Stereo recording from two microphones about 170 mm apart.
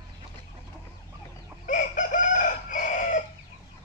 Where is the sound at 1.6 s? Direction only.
50° left (ahead or behind).